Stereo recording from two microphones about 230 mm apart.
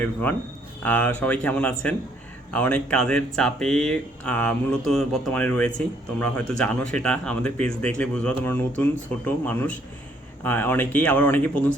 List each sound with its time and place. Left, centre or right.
0.0 s speech: centre